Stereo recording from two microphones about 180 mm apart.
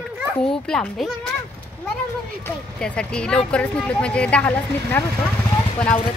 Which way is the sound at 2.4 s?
5° left (ahead or behind).